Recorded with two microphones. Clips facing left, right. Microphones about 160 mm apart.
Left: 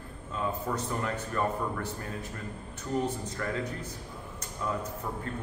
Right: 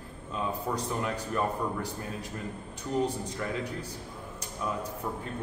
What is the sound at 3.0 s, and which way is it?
Speech, 10° right (ahead or behind).